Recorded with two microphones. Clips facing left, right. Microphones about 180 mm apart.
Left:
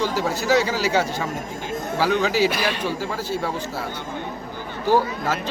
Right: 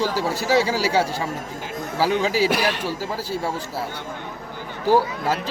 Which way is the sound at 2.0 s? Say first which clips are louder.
Even; 10° right (ahead or behind).